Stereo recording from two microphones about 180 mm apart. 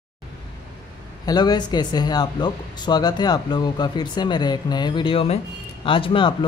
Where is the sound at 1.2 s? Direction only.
20° left (ahead or behind).